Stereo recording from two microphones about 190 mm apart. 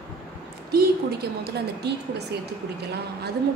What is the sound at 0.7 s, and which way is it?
A woman's voice, 55° right (ahead or behind).